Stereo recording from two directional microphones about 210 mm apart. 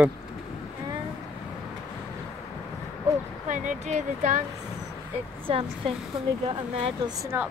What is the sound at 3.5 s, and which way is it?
Speech, 35° right (ahead or behind).